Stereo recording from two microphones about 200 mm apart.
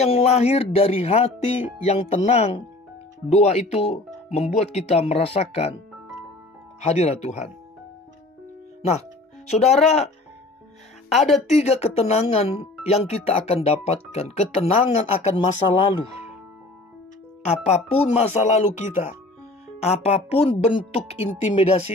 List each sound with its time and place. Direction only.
0.0 s speech: 30° left (ahead or behind)
6.8 s speech: 35° left (ahead or behind)
9.5 s speech: 30° left (ahead or behind)
11.1 s speech: centre (ahead or behind)
11.4 s speech: 35° left (ahead or behind)
17.6 s speech: 30° left (ahead or behind)